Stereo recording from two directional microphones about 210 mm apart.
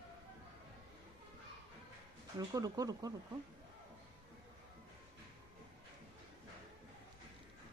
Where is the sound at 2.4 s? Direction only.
15° right (ahead or behind).